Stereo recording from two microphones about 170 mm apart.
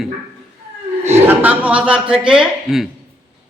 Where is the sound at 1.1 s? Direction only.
10° right (ahead or behind).